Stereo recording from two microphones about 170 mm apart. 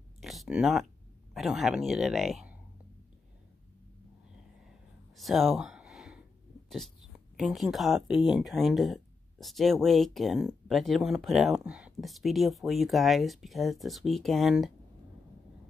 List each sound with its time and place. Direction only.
0.2 s speech: centre (ahead or behind)
5.1 s a sound: centre (ahead or behind)
6.7 s speech: centre (ahead or behind)